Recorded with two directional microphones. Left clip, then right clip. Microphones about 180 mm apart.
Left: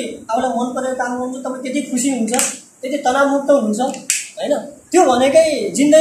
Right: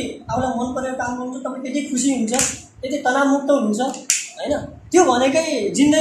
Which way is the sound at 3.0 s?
10° right (ahead or behind).